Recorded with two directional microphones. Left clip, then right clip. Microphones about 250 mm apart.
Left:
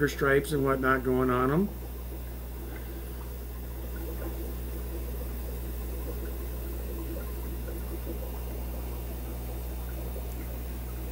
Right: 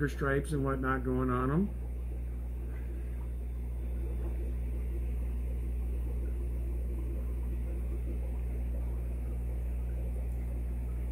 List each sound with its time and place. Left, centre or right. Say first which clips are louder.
0.0 s speech: left 7 dB; centre